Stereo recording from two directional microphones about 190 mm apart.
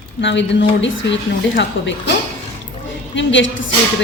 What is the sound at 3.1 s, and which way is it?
Speech, 75° left (ahead or behind).